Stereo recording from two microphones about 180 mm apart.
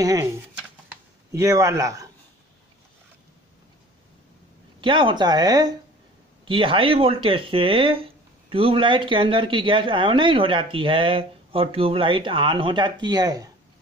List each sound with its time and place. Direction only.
0.0 s speech: 20° right (ahead or behind)
1.3 s a man's voice: 15° right (ahead or behind)
4.7 s speech: 30° right (ahead or behind)